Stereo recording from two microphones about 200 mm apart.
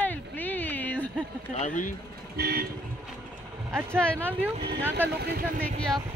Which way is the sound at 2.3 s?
50° right (ahead or behind).